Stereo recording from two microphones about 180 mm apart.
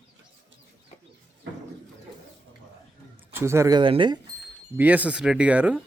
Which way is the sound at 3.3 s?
15° right (ahead or behind).